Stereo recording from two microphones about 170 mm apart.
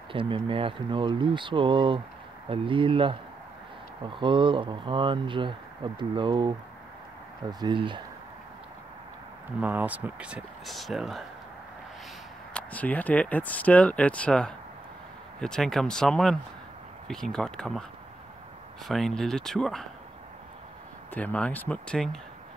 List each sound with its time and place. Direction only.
0.1 s speech: 30° right (ahead or behind)
9.6 s speech: 10° right (ahead or behind)
12.5 s speech: 10° left (ahead or behind)
18.9 s speech: centre (ahead or behind)
21.1 s speech: 10° left (ahead or behind)